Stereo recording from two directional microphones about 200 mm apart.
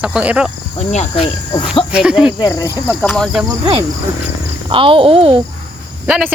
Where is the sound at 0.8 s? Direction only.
35° left (ahead or behind).